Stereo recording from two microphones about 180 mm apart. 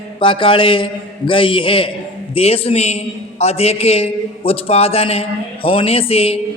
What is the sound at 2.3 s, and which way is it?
A man's voice, 35° left (ahead or behind).